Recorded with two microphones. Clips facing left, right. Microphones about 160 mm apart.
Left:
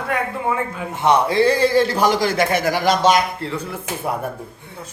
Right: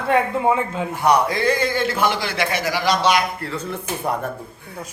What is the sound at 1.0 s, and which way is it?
A man's voice, 25° left (ahead or behind).